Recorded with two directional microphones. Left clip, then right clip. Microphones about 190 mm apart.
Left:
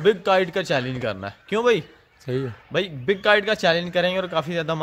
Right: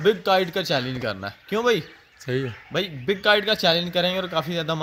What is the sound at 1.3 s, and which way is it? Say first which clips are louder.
Speech: left 2 dB; 30° left (ahead or behind).